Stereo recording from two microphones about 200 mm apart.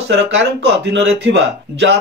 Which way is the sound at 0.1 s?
60° right (ahead or behind).